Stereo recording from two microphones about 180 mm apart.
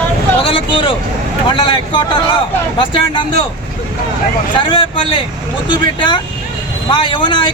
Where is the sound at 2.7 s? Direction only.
25° left (ahead or behind).